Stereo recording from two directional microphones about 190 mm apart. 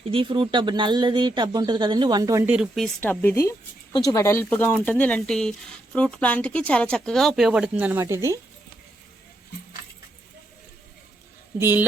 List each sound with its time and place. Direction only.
0.1 s speech: 25° right (ahead or behind)
11.6 s speech: 10° right (ahead or behind)